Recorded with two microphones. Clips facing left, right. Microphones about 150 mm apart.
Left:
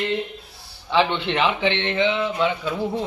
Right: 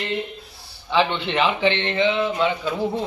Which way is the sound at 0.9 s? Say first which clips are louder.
Even; 15° right (ahead or behind).